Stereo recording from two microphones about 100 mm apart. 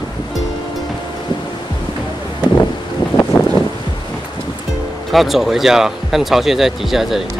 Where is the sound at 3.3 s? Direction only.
45° left (ahead or behind).